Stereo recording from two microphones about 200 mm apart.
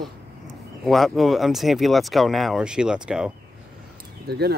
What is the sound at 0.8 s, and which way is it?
Speech, centre (ahead or behind).